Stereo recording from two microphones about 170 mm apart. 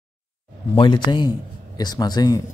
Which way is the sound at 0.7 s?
25° left (ahead or behind).